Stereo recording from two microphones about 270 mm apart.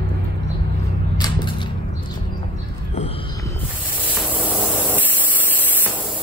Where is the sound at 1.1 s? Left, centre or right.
Centre.